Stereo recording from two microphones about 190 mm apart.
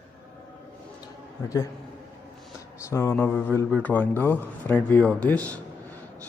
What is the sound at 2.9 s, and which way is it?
A man's voice, 10° left (ahead or behind).